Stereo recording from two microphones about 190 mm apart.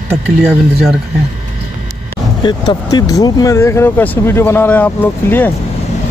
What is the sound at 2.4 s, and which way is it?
Speech, 25° left (ahead or behind).